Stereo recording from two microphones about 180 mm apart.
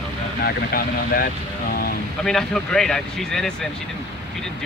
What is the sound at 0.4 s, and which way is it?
Speech, 60° left (ahead or behind).